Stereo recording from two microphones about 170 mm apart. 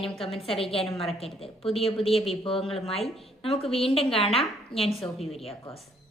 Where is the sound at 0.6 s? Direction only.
35° left (ahead or behind).